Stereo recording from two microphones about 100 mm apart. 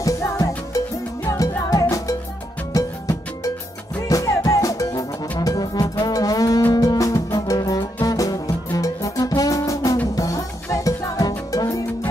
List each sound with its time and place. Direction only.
0.0 s music: 30° left (ahead or behind)